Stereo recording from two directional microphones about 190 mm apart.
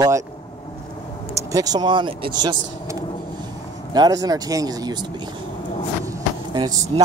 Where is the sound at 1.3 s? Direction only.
20° right (ahead or behind).